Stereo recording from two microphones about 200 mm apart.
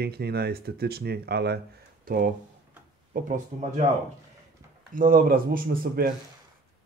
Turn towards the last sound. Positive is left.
turn(degrees=-45)  # may be behind; listen again after turning